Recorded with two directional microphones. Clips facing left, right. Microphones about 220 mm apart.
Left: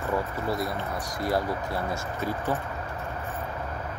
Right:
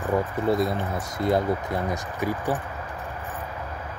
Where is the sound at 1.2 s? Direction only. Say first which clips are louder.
Right 5 dB; 20° right (ahead or behind).